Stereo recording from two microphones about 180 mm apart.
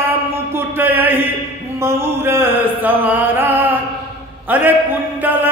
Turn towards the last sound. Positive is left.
turn(degrees=-10)  # may be behind; listen again after turning